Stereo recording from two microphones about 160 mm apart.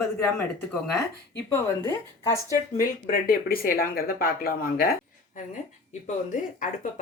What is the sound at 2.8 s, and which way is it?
Speech, 65° left (ahead or behind).